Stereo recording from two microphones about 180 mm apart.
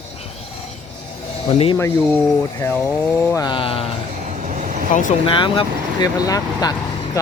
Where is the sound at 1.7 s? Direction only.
10° left (ahead or behind).